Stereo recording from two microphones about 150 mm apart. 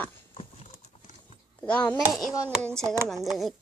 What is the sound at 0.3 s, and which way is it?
Clip-clop, 45° left (ahead or behind).